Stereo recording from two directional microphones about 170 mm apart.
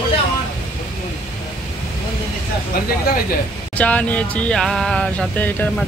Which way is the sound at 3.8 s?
10° left (ahead or behind).